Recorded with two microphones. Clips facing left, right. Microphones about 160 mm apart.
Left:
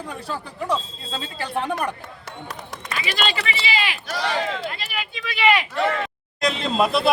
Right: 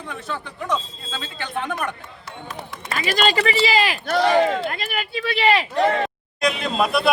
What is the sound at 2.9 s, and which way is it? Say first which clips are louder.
Speech: right 6 dB; 45° right (ahead or behind).